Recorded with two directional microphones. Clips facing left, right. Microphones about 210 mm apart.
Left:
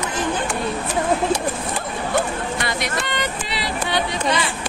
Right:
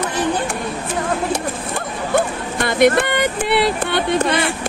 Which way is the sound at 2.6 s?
55° right (ahead or behind).